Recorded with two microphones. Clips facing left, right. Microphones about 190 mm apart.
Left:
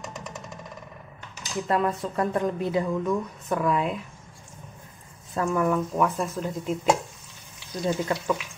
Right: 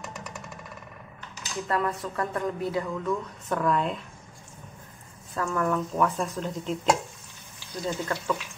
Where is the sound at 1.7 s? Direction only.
25° left (ahead or behind); by 4.0 s 5° left (ahead or behind).